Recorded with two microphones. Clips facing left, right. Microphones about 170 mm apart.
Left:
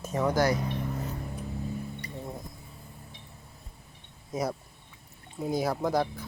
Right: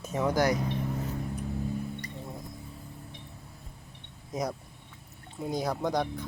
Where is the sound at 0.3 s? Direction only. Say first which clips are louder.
Even; 15° right (ahead or behind).